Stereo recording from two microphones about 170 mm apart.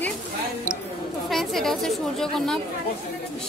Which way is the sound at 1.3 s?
Centre (ahead or behind).